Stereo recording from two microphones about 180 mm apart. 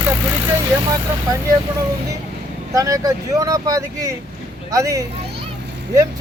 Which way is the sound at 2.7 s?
20° right (ahead or behind).